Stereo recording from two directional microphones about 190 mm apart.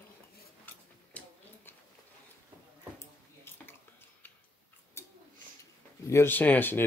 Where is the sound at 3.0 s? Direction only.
10° left (ahead or behind).